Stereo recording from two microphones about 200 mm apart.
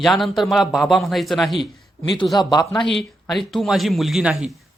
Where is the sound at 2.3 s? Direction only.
20° left (ahead or behind).